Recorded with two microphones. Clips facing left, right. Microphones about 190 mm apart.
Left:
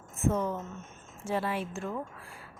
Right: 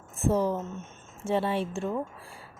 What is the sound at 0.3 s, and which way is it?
A woman's voice, 30° right (ahead or behind).